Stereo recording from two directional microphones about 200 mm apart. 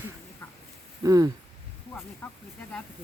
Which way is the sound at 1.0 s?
20° right (ahead or behind).